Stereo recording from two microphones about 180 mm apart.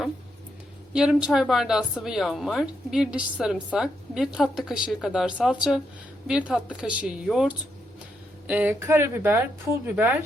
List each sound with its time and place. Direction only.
0.9 s speech: 5° right (ahead or behind)